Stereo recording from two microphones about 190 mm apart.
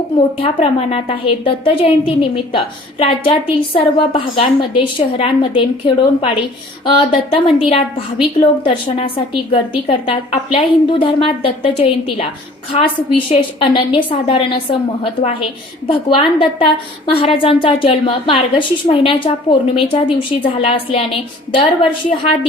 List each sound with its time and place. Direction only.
0.3 s a woman's voice: 30° left (ahead or behind)